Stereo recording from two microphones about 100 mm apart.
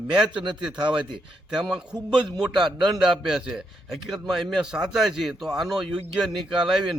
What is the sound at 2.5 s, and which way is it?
Speech, 50° right (ahead or behind).